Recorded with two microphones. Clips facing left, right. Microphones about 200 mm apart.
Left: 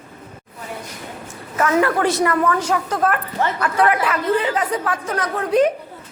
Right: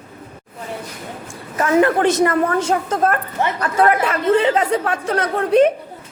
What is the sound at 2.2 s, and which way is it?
Speech, 40° right (ahead or behind).